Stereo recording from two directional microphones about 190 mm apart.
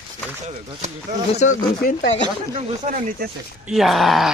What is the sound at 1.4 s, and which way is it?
Speech, 45° left (ahead or behind).